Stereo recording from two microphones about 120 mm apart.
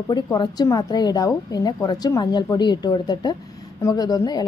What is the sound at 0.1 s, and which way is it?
A woman's voice, 35° left (ahead or behind).